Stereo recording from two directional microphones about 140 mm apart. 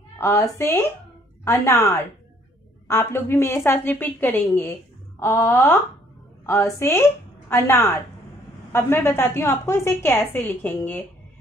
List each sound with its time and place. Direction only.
0.2 s a woman's voice: 20° left (ahead or behind)